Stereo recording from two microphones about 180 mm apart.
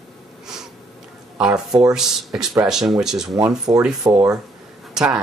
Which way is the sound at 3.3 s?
20° right (ahead or behind).